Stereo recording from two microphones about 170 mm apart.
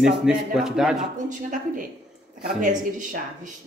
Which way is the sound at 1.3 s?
50° right (ahead or behind).